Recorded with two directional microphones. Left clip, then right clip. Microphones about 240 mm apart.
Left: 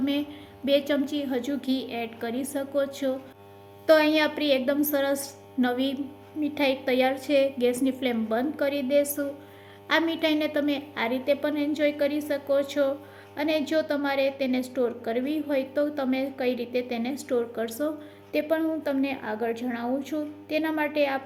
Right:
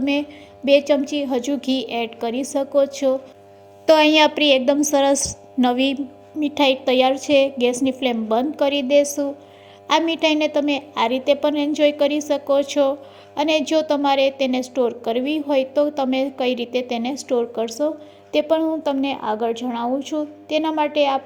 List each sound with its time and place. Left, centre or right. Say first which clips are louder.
0.0 s a woman's voice: right 6 dB; right